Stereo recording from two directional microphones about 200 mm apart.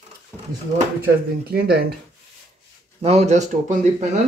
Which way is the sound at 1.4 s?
50° right (ahead or behind).